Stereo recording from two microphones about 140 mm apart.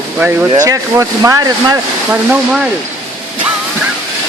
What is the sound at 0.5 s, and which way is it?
Speech, 25° right (ahead or behind).